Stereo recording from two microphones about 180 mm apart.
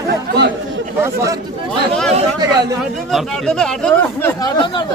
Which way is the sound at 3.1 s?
5° left (ahead or behind).